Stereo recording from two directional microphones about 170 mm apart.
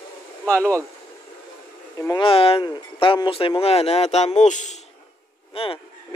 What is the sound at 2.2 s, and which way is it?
Speech, 35° left (ahead or behind).